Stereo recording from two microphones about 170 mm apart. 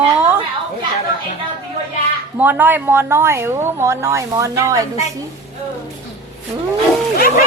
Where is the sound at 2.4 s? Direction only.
10° right (ahead or behind).